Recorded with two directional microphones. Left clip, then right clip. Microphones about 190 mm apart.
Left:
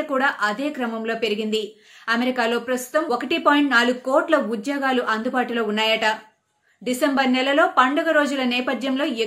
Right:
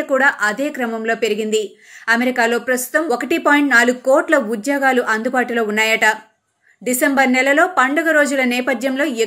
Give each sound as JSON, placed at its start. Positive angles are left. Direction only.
{"t": 0.1, "sound": "a woman's voice", "side_deg": -20}